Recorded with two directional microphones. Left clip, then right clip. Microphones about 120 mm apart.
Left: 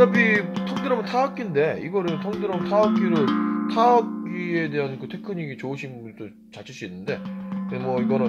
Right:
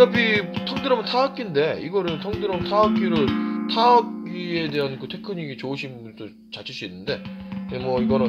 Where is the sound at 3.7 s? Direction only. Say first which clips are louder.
Right 2 dB; 60° left (ahead or behind).